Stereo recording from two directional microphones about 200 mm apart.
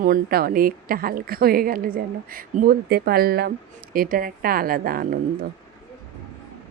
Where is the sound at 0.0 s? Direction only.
45° right (ahead or behind).